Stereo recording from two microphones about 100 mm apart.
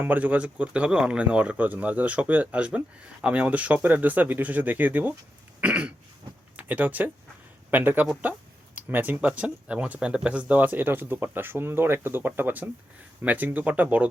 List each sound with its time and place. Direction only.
0.0 s speech: 15° right (ahead or behind)
5.5 s throat clearing: 10° right (ahead or behind)
6.6 s speech: 15° right (ahead or behind)